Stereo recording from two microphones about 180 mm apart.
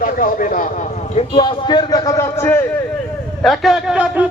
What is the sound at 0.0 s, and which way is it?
Speech, 50° left (ahead or behind).